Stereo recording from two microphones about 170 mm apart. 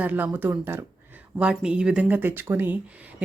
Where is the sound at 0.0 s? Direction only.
10° right (ahead or behind).